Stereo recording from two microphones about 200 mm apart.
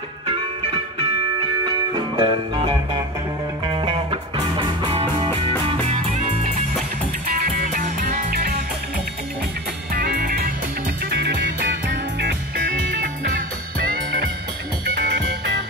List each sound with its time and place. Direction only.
1.7 s music: 20° right (ahead or behind)
5.7 s music: 35° right (ahead or behind)
9.9 s music: 50° right (ahead or behind)
11.1 s music: 60° right (ahead or behind)